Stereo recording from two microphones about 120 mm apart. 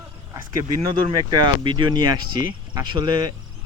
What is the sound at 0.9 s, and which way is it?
Speech, 40° right (ahead or behind).